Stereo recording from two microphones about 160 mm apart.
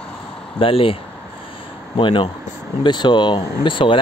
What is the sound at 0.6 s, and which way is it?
Speech, 35° left (ahead or behind).